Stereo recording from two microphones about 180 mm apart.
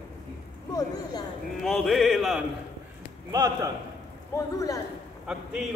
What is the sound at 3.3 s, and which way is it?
Speech, 20° right (ahead or behind).